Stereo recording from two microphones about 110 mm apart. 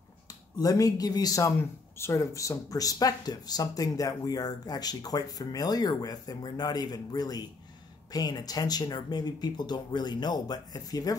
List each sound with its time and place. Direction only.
0.3 s speech: 30° left (ahead or behind)